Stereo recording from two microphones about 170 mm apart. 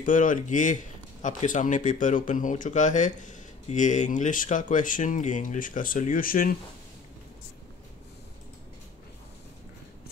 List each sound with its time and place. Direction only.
0.0 s speech: 50° left (ahead or behind)